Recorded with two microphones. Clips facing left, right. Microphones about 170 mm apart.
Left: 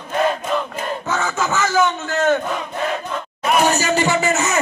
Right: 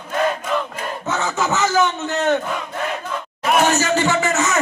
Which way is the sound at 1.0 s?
20° right (ahead or behind).